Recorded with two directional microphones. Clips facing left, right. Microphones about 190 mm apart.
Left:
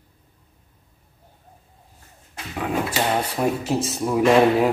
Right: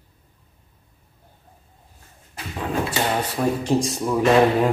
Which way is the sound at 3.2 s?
10° left (ahead or behind).